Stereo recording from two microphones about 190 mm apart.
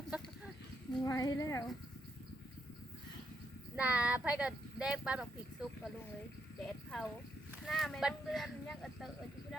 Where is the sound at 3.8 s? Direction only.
5° right (ahead or behind).